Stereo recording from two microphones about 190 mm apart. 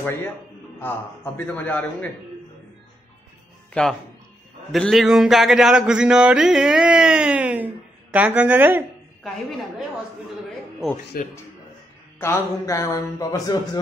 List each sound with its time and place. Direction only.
0.0 s a man's voice: 10° left (ahead or behind)
4.7 s a sound: centre (ahead or behind)
10.8 s speech: centre (ahead or behind)
12.2 s a man's voice: 15° left (ahead or behind)